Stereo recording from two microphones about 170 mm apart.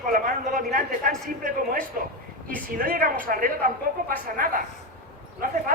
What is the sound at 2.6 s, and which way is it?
Speech, 60° right (ahead or behind).